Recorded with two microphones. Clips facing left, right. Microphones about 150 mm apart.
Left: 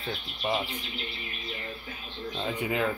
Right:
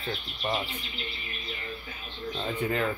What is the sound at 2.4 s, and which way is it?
Speech, 10° left (ahead or behind).